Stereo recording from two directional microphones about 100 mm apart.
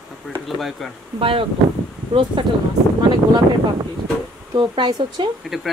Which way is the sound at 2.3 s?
50° right (ahead or behind).